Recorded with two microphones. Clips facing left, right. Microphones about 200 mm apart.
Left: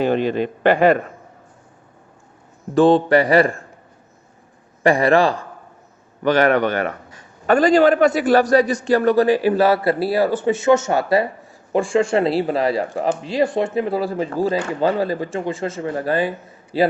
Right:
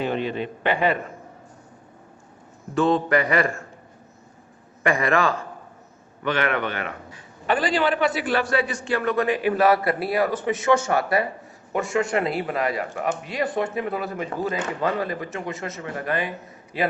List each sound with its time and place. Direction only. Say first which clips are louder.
0.6 s a man's voice: left 8 dB; 45° left (ahead or behind)
2.7 s a man's voice: left 7 dB; 30° left (ahead or behind)
4.8 s a man's voice: left 7 dB; 35° left (ahead or behind)